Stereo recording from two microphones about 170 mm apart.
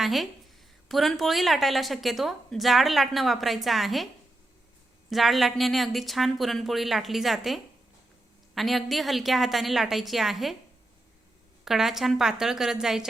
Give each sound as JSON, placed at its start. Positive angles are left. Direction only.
{"t": 0.0, "sound": "a woman's voice", "side_deg": 0}
{"t": 11.6, "sound": "a woman's voice", "side_deg": 0}